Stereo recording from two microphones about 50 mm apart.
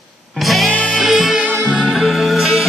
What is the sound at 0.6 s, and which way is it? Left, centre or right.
Music, centre.